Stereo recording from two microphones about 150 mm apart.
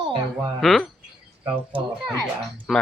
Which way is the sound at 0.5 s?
Centre (ahead or behind).